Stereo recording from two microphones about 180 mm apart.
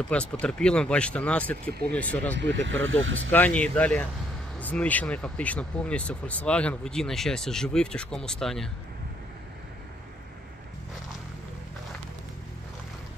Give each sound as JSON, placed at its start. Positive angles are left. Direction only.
{"t": 0.1, "sound": "speech", "side_deg": 5}
{"t": 2.8, "sound": "speech", "side_deg": -90}
{"t": 3.3, "sound": "speech", "side_deg": 10}